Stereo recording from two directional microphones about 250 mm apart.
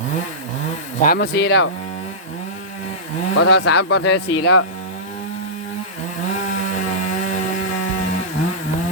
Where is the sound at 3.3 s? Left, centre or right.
Left.